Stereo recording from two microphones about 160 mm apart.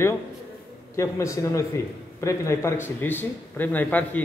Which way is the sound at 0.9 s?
20° left (ahead or behind).